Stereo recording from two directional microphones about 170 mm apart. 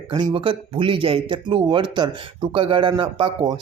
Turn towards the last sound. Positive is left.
turn(degrees=-30)  # may be behind; listen again after turning